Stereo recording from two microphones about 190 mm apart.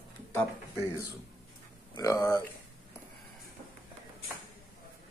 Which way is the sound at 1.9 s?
20° left (ahead or behind).